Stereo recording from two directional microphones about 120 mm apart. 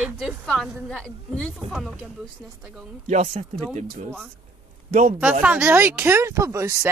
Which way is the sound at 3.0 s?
70° right (ahead or behind).